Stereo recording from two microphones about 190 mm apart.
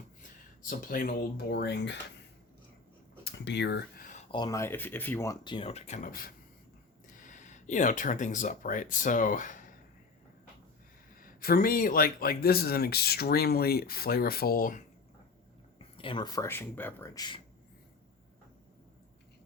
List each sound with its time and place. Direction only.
0.7 s speech: 50° left (ahead or behind); by 2.0 s 65° left (ahead or behind)
3.2 s a sound: 65° left (ahead or behind)
4.3 s speech: 20° left (ahead or behind); by 9.6 s 40° left (ahead or behind)
11.2 s speech: 50° left (ahead or behind)
16.0 s speech: 25° left (ahead or behind)